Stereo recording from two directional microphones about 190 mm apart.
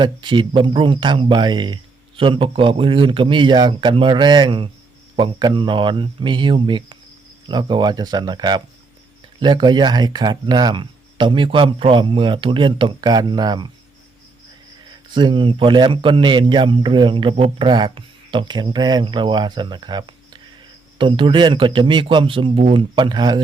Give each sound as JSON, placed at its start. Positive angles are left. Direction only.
{"t": 0.0, "sound": "a man's voice", "side_deg": -25}
{"t": 15.1, "sound": "a man's voice", "side_deg": -25}